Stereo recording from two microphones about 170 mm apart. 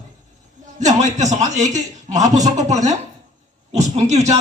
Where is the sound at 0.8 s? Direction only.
45° right (ahead or behind).